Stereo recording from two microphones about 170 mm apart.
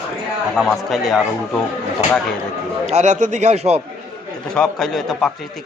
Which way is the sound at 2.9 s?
40° right (ahead or behind).